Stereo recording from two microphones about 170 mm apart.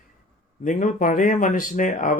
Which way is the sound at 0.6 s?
50° left (ahead or behind).